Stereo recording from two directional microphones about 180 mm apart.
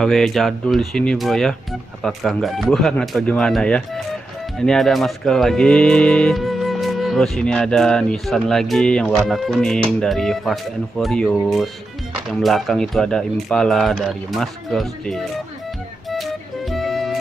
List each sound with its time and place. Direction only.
0.0 s speech: centre (ahead or behind)
16.1 s music: centre (ahead or behind)